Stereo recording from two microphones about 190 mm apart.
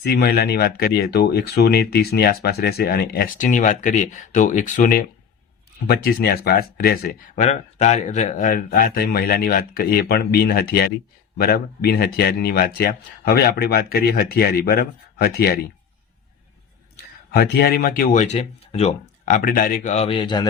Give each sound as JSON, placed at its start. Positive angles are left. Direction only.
{"t": 0.0, "sound": "speech", "side_deg": 55}
{"t": 7.3, "sound": "speech", "side_deg": 35}
{"t": 17.3, "sound": "speech", "side_deg": 55}